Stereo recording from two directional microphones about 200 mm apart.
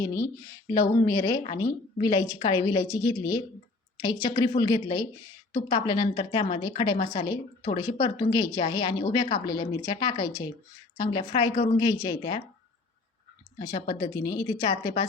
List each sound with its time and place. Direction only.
0.0 s a woman's voice: 15° left (ahead or behind)
6.9 s a woman's voice: 30° left (ahead or behind)
14.0 s a woman's voice: 20° left (ahead or behind)